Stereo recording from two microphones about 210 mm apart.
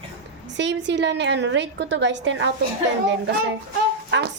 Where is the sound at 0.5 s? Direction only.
55° right (ahead or behind).